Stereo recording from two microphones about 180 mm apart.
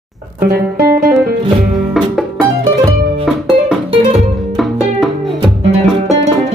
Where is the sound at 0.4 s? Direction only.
60° right (ahead or behind).